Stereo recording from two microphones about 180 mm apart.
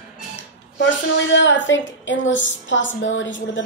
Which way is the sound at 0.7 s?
90° left.